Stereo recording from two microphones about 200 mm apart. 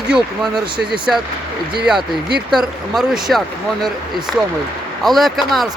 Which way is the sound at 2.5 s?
Centre (ahead or behind).